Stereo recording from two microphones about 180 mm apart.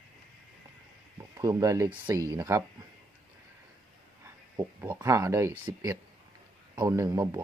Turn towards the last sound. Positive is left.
turn(degrees=-15)  # may be behind; listen again after turning